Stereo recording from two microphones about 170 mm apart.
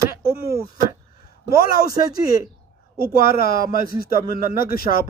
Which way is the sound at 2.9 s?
60° left (ahead or behind).